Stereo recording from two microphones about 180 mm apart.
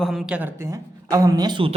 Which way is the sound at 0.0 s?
Centre (ahead or behind).